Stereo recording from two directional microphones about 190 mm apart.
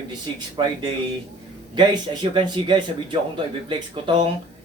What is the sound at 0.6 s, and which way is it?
Speech, 20° right (ahead or behind).